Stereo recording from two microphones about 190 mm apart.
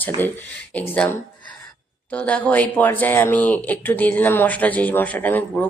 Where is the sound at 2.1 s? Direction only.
5° left (ahead or behind).